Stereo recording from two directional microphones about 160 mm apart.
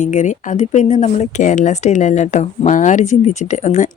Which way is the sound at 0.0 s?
50° left (ahead or behind).